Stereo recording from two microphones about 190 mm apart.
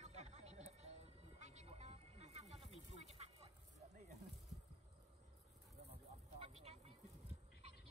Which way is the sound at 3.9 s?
40° right (ahead or behind).